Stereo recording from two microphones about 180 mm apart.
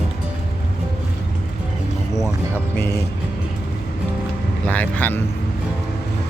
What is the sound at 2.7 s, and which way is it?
Speech, 15° left (ahead or behind).